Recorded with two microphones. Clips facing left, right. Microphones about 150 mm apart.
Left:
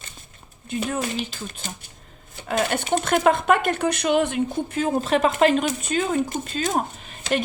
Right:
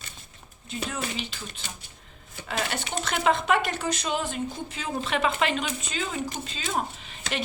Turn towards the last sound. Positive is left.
turn(degrees=45)  # may be behind; listen again after turning